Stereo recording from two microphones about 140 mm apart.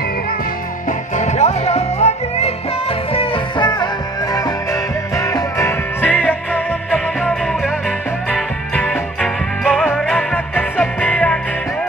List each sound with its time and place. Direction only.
0.8 s music: 60° left (ahead or behind)
3.1 s music: 35° left (ahead or behind); by 7.7 s centre (ahead or behind)
8.7 s music: 5° left (ahead or behind)